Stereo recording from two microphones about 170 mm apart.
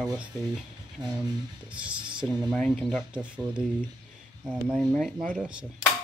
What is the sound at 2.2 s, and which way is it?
Speech, centre (ahead or behind).